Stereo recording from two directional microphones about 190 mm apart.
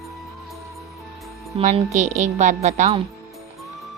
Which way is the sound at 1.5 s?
35° right (ahead or behind).